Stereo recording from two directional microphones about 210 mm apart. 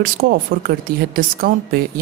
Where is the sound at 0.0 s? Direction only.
45° right (ahead or behind).